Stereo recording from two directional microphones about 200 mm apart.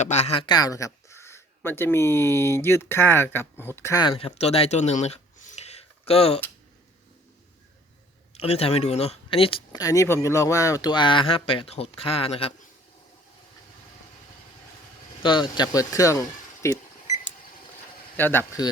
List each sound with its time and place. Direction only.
0.0 s speech: 35° left (ahead or behind)
8.3 s speech: 30° left (ahead or behind)
15.2 s speech: 20° left (ahead or behind)
18.2 s speech: 10° left (ahead or behind)